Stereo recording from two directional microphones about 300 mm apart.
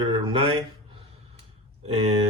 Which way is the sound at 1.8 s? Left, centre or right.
Centre.